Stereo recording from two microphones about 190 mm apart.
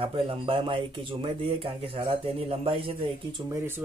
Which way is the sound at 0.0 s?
30° right (ahead or behind).